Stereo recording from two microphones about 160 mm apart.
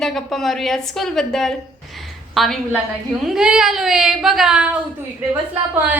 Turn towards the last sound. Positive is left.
turn(degrees=-10)  # may be behind; listen again after turning